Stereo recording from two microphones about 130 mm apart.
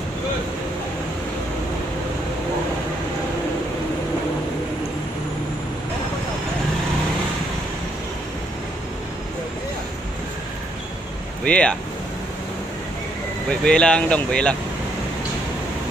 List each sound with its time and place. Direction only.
11.4 s speech: 10° left (ahead or behind)
13.5 s speech: 5° left (ahead or behind)